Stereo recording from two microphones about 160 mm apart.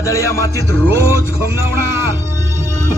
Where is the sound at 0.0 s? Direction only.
20° left (ahead or behind).